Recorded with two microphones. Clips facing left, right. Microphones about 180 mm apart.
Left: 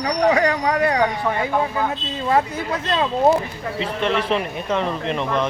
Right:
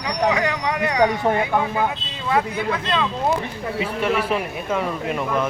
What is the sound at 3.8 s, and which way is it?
Speech, 10° right (ahead or behind).